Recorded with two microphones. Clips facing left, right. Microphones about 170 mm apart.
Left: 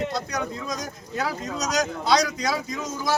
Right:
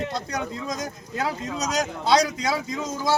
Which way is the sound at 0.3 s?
25° right (ahead or behind).